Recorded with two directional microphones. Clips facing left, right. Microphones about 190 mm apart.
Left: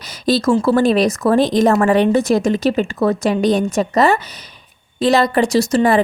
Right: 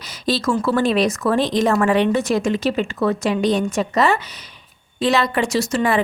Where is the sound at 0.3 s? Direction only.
40° left (ahead or behind).